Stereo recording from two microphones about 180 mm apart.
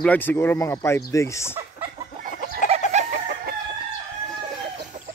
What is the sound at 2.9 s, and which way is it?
Chicken, 40° right (ahead or behind).